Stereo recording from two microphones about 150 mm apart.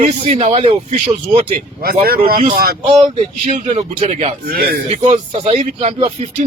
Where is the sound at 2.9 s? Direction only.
45° right (ahead or behind).